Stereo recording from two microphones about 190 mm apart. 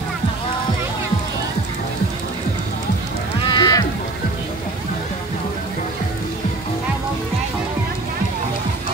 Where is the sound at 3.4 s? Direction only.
20° left (ahead or behind).